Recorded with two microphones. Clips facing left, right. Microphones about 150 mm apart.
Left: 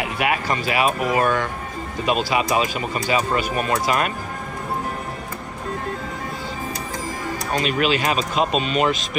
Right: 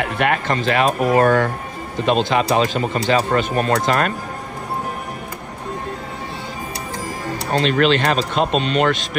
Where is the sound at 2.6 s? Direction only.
35° right (ahead or behind).